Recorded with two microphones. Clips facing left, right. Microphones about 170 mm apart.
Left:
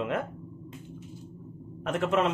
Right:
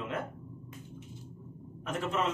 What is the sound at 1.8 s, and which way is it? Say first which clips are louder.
Speech: left 7 dB; 65° left (ahead or behind).